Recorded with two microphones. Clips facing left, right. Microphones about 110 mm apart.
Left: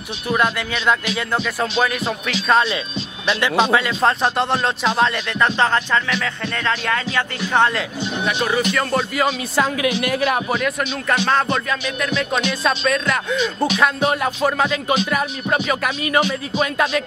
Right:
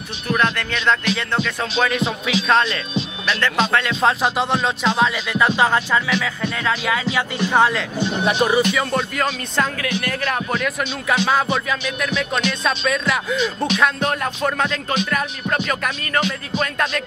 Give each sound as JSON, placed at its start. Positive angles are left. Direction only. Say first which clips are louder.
{"t": 0.3, "sound": "speech", "louder": "left 1 dB", "side_deg": 10}
{"t": 8.4, "sound": "speech", "louder": "right 3 dB", "side_deg": -15}
{"t": 8.7, "sound": "speech", "louder": "left 1 dB", "side_deg": 5}